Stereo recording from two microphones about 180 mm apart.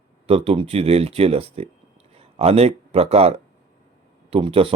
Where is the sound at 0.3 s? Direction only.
35° right (ahead or behind).